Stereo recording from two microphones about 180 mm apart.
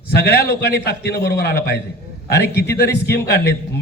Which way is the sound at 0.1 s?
65° left (ahead or behind).